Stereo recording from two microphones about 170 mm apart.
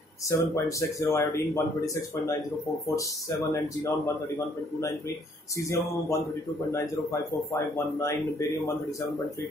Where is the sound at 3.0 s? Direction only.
20° left (ahead or behind).